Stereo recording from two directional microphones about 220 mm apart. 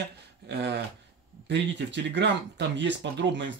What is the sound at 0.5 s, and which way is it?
Speech, 50° right (ahead or behind).